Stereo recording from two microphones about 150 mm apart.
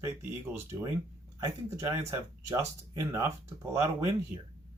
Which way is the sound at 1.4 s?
20° right (ahead or behind).